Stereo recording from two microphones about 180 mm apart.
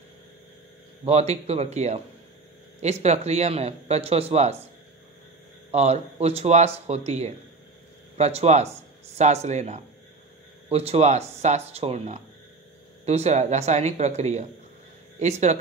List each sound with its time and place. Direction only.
1.0 s speech: 35° right (ahead or behind)
5.7 s speech: 35° right (ahead or behind)